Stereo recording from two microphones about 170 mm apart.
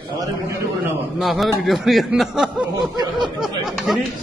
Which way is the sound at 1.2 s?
Centre (ahead or behind).